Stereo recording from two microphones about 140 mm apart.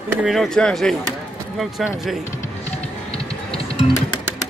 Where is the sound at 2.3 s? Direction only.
50° left (ahead or behind).